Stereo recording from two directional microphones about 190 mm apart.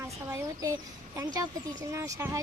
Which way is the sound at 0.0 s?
15° right (ahead or behind).